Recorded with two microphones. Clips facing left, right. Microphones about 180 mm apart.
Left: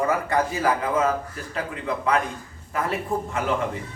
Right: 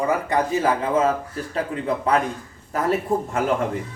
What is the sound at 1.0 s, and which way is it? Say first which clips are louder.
A man's voice: right 2 dB; 35° right (ahead or behind).